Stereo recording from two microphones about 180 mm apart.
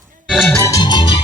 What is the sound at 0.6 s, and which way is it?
Music, 20° left (ahead or behind).